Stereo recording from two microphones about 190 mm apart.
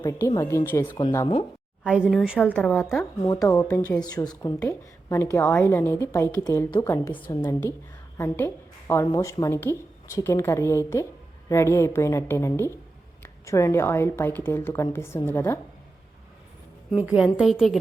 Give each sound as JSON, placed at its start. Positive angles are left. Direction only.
{"t": 0.0, "sound": "a woman's voice", "side_deg": 20}
{"t": 1.8, "sound": "a woman's voice", "side_deg": -5}
{"t": 3.4, "sound": "a woman's voice", "side_deg": 15}
{"t": 16.9, "sound": "a woman's voice", "side_deg": -5}